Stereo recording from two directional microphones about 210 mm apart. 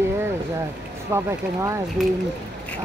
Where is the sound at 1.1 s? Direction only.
15° right (ahead or behind).